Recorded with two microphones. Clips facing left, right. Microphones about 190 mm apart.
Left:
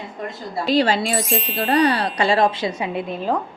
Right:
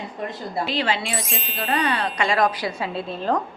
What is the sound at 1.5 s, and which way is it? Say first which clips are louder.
A woman's voice: left 6 dB; 40° left (ahead or behind).